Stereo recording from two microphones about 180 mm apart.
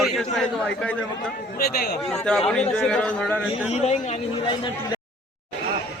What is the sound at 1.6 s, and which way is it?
Speech, 60° left (ahead or behind).